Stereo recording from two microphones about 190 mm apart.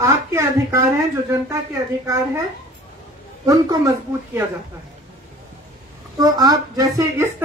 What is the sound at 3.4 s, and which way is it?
Speech, 20° right (ahead or behind).